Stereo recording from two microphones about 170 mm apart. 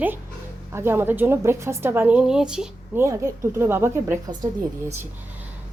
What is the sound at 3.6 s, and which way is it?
Speech, 15° right (ahead or behind).